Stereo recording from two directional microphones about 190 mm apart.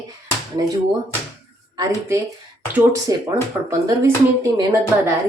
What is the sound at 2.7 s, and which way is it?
Speech, 15° right (ahead or behind).